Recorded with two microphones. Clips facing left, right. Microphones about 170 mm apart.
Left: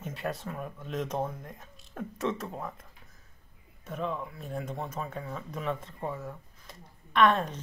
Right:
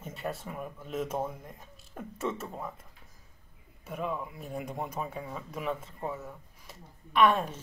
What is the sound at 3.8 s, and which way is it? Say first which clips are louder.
Speech: left 1 dB; 10° right (ahead or behind).